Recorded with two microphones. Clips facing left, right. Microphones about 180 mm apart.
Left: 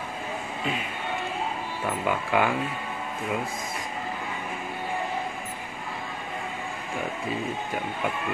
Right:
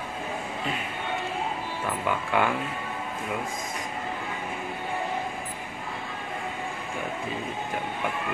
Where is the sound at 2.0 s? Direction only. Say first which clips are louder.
Left 1 dB; 10° left (ahead or behind).